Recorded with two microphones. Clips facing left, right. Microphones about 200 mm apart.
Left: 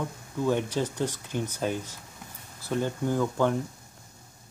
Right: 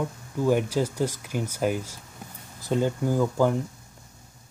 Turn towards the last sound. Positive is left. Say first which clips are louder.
# right 3 dB
turn(degrees=-5)  # may be behind; listen again after turning